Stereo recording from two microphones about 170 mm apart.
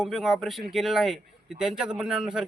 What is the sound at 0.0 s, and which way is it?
A man's voice, centre (ahead or behind).